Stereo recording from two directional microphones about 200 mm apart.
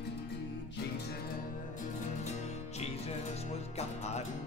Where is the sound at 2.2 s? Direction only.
35° left (ahead or behind).